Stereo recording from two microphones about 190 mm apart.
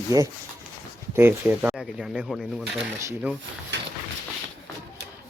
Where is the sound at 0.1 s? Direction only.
15° right (ahead or behind).